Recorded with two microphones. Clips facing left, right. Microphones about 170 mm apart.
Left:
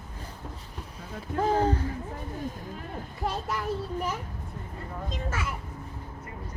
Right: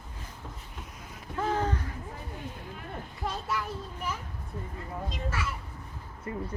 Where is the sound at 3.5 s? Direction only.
40° left (ahead or behind).